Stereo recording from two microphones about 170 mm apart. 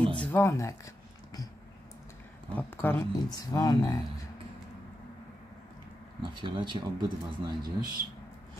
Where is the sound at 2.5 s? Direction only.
15° left (ahead or behind).